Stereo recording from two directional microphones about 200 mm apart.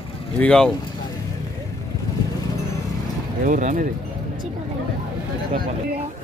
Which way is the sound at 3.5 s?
40° right (ahead or behind).